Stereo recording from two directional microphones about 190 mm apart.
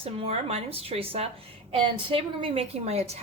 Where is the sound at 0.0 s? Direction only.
30° right (ahead or behind).